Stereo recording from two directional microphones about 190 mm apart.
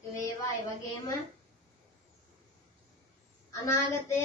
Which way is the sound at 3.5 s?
15° left (ahead or behind).